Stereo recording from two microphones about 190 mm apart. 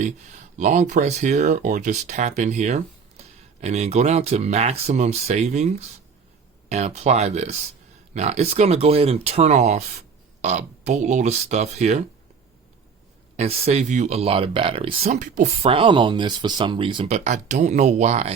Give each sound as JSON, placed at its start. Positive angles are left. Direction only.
{"t": 0.0, "sound": "speech", "side_deg": -40}
{"t": 13.3, "sound": "speech", "side_deg": -35}